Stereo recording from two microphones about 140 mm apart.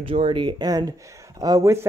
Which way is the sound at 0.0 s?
40° right (ahead or behind).